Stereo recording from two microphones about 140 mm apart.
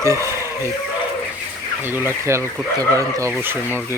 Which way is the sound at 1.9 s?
15° right (ahead or behind).